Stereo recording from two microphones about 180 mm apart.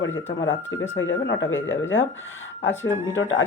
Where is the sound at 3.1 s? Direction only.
90° left.